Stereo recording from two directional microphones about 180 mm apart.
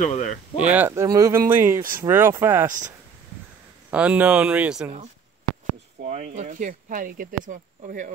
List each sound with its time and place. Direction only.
0.0 s speech: 45° left (ahead or behind)
0.7 s speech: 15° right (ahead or behind)
3.9 s speech: 5° right (ahead or behind)
6.0 s speech: 40° right (ahead or behind)